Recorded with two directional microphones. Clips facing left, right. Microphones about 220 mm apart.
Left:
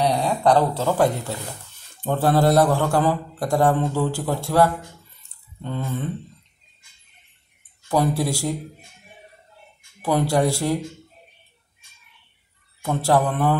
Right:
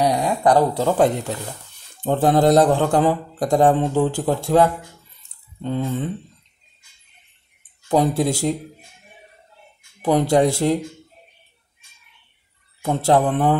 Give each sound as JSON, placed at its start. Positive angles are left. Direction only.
{"t": 0.0, "sound": "speech", "side_deg": -10}
{"t": 7.9, "sound": "speech", "side_deg": -20}
{"t": 10.0, "sound": "speech", "side_deg": -20}
{"t": 12.8, "sound": "speech", "side_deg": -20}